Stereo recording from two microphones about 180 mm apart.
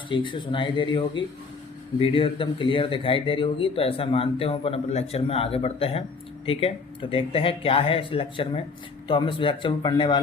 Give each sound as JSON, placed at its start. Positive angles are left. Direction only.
{"t": 0.1, "sound": "speech", "side_deg": 25}